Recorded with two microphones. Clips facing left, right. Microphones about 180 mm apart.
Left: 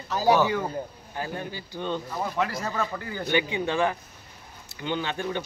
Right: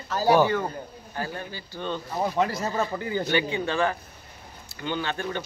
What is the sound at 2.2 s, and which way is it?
Speech, 30° right (ahead or behind).